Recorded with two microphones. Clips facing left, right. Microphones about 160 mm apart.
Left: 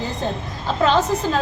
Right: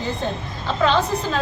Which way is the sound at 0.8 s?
45° left (ahead or behind).